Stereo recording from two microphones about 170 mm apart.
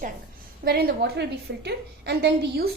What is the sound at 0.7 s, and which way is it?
A woman's voice, 65° right (ahead or behind).